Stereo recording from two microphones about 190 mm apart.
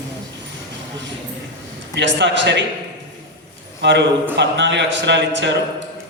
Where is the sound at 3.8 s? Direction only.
65° right (ahead or behind).